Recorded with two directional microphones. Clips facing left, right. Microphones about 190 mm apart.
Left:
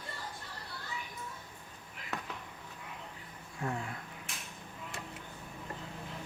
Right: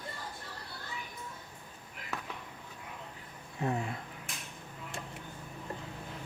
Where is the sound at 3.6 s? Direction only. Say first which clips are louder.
Right 4 dB; 20° right (ahead or behind).